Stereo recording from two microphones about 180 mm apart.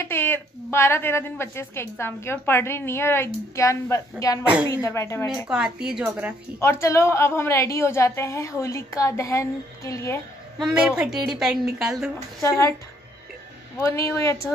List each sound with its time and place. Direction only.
0.0 s a woman's voice: 10° left (ahead or behind)
5.5 s a woman's voice: 5° right (ahead or behind)
6.6 s a woman's voice: 15° left (ahead or behind)
10.6 s a woman's voice: 5° right (ahead or behind)
12.4 s a woman's voice: 15° left (ahead or behind)
13.7 s a woman's voice: 15° left (ahead or behind)